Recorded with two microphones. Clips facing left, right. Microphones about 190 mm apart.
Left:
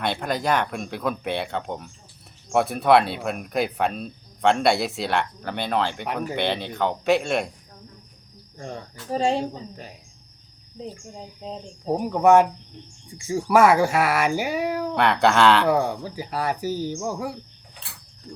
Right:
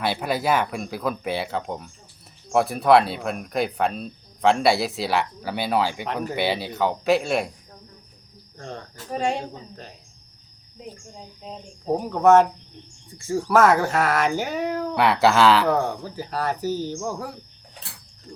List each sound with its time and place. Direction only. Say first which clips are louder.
0.0 s speech: right 1 dB; 5° right (ahead or behind)
8.5 s speech: left 1 dB; 10° left (ahead or behind)
9.0 s a woman's voice: left 3 dB; 30° left (ahead or behind)
9.4 s speech: left 5 dB; 10° left (ahead or behind)
11.9 s speech: even; 10° left (ahead or behind)
14.9 s speech: right 1 dB; 5° right (ahead or behind)
15.6 s speech: left 1 dB; 10° left (ahead or behind)